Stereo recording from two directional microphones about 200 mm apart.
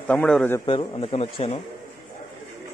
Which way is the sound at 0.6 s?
25° left (ahead or behind).